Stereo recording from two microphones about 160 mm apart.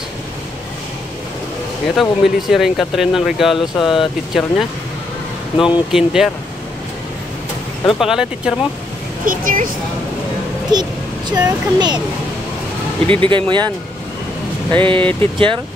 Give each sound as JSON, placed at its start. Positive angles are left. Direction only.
{"t": 2.0, "sound": "speech", "side_deg": 0}
{"t": 7.8, "sound": "speech", "side_deg": -5}
{"t": 9.2, "sound": "speech", "side_deg": -60}
{"t": 10.7, "sound": "a child's voice", "side_deg": -25}
{"t": 13.1, "sound": "speech", "side_deg": -30}
{"t": 14.7, "sound": "speech", "side_deg": -30}